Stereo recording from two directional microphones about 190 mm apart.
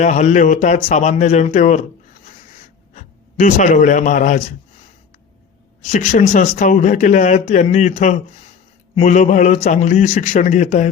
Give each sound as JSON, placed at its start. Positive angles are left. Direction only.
{"t": 0.0, "sound": "speech", "side_deg": 40}
{"t": 2.9, "sound": "a man's voice", "side_deg": 40}
{"t": 5.8, "sound": "speech", "side_deg": 40}